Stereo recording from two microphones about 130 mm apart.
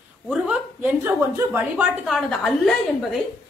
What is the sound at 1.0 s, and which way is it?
Speech, 20° right (ahead or behind).